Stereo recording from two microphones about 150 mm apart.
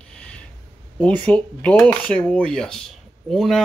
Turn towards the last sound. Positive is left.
turn(degrees=0)  # may be behind; listen again after turning